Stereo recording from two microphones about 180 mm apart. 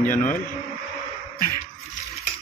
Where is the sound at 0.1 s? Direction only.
45° left (ahead or behind).